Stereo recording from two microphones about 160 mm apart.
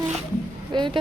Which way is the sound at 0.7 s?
30° right (ahead or behind).